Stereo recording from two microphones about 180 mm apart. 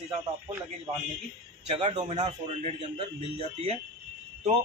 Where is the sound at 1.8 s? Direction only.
35° right (ahead or behind).